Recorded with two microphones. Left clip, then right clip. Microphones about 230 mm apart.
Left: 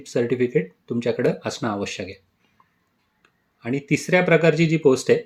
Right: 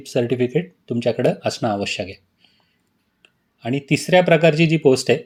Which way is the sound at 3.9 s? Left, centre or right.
Right.